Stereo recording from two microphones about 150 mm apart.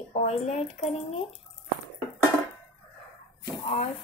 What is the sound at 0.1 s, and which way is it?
Speech, 50° left (ahead or behind).